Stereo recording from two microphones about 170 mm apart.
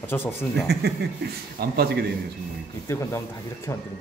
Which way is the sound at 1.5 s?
65° right (ahead or behind).